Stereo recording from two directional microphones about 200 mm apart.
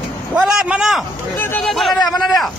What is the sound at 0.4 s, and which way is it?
Speech, 5° right (ahead or behind).